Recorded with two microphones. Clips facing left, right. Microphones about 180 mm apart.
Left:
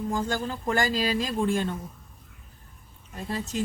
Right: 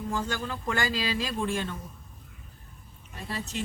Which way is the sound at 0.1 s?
40° left (ahead or behind).